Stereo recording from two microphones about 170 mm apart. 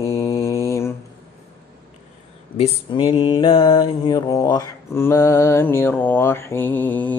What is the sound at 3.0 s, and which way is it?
Mantra, 25° left (ahead or behind).